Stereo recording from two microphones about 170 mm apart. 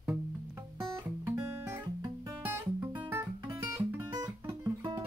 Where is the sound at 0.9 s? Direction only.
20° right (ahead or behind).